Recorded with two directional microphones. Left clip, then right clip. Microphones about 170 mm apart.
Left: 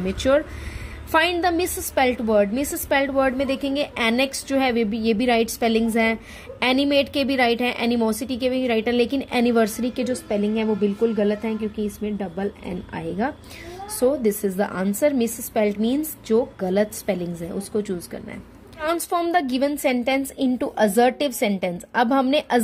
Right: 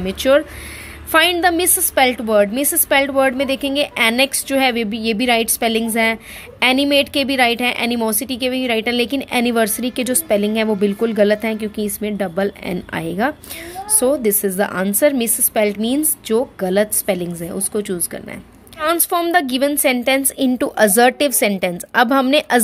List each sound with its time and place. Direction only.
0.0 s a woman's voice: 10° right (ahead or behind)
10.0 s speech: 30° right (ahead or behind)
13.9 s a woman's voice: 15° right (ahead or behind)